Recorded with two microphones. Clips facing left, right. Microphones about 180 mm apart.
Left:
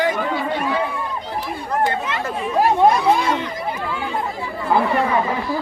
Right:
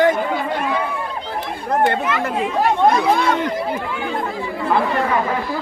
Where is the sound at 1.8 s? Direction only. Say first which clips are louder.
Right 4 dB; 65° right (ahead or behind).